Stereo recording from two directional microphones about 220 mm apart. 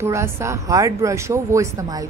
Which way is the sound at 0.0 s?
10° right (ahead or behind).